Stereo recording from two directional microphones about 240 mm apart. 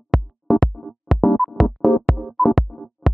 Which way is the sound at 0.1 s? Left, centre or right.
Centre.